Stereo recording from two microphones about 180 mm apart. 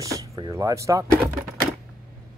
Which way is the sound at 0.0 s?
20° right (ahead or behind).